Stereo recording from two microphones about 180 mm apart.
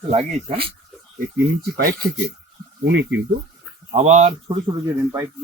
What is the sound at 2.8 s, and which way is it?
Speech, 70° right (ahead or behind).